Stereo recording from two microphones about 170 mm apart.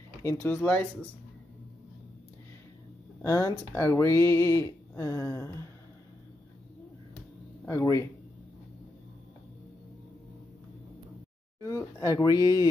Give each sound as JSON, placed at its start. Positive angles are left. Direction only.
{"t": 0.2, "sound": "speech", "side_deg": 15}
{"t": 3.3, "sound": "speech", "side_deg": 15}
{"t": 7.6, "sound": "speech", "side_deg": 20}
{"t": 11.6, "sound": "speech", "side_deg": 15}